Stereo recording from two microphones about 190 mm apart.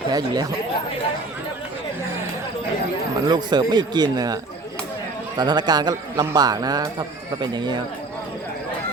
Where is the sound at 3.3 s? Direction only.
20° right (ahead or behind).